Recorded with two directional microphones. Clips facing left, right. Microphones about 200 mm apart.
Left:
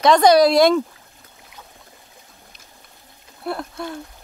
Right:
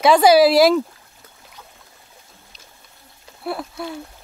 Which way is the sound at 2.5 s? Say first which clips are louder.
Right 1 dB; 55° left (ahead or behind).